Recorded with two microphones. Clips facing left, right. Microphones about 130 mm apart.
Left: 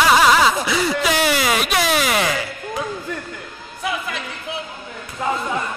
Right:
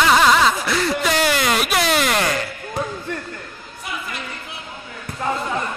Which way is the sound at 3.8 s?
90° left.